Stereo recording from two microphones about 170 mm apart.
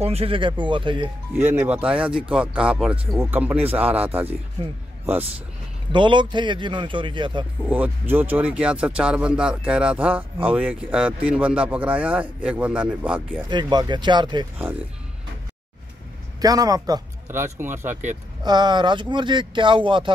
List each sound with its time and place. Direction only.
0.0 s speech: 35° right (ahead or behind)
1.3 s speech: 10° right (ahead or behind)
5.9 s speech: 30° right (ahead or behind)
7.6 s speech: 10° right (ahead or behind)
13.5 s speech: 25° right (ahead or behind)
16.3 s speech: 20° right (ahead or behind)
18.4 s speech: 25° right (ahead or behind)